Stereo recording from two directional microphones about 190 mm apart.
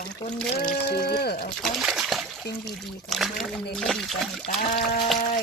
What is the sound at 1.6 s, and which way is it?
Speech, centre (ahead or behind).